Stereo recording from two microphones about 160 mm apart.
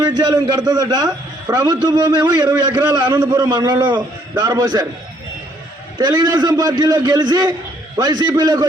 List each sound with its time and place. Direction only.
0.0 s a man's voice: 25° right (ahead or behind)
6.0 s a man's voice: 25° right (ahead or behind)